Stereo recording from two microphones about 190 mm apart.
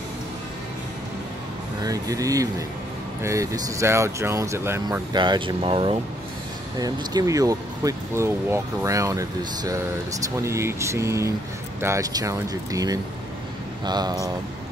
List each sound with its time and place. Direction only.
1.8 s speech: 20° right (ahead or behind)